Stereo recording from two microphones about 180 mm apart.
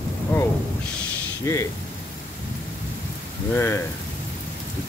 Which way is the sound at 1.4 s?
15° left (ahead or behind).